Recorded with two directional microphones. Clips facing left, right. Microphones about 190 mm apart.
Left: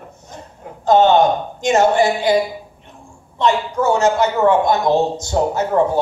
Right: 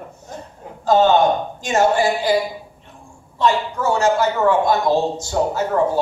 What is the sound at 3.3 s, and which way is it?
A man's voice, 20° left (ahead or behind).